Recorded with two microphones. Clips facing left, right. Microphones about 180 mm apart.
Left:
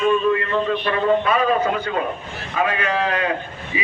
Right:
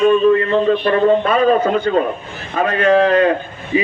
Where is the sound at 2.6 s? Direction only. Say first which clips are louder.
Right 8 dB; 45° right (ahead or behind).